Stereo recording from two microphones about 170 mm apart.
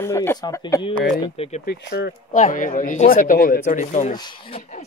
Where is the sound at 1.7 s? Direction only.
75° left (ahead or behind).